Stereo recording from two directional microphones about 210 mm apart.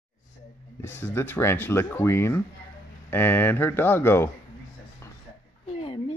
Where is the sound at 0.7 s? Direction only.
10° left (ahead or behind).